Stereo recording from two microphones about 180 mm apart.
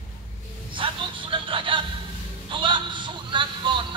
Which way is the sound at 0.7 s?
30° right (ahead or behind).